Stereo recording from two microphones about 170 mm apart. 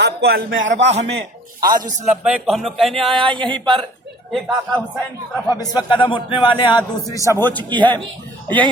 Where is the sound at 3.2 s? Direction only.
30° right (ahead or behind).